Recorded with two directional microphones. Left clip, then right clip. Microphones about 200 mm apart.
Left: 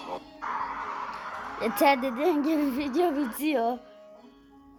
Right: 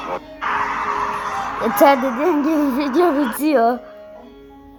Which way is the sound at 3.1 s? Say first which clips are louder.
Right 11 dB; 40° right (ahead or behind).